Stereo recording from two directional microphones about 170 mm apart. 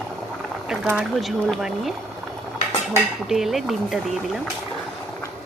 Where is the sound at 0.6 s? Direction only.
5° right (ahead or behind).